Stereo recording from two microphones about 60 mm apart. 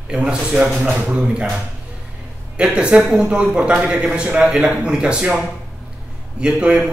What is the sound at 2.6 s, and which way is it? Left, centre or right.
Speech, centre.